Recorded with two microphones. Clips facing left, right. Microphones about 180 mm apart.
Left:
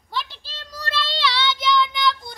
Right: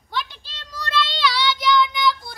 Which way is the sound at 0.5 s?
30° left (ahead or behind).